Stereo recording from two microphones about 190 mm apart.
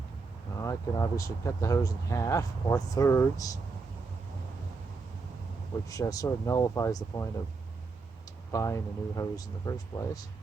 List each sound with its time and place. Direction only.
0.6 s speech: 15° left (ahead or behind)
5.9 s speech: 20° left (ahead or behind)
8.5 s speech: 15° left (ahead or behind)